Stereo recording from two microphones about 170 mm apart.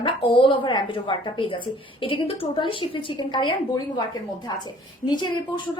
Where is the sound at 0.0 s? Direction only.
30° left (ahead or behind).